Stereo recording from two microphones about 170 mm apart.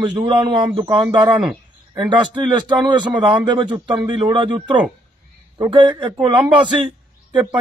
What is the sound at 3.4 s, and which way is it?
Speech, 25° right (ahead or behind).